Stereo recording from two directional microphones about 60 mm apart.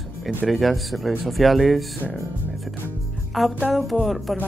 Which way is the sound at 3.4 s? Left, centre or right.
Centre.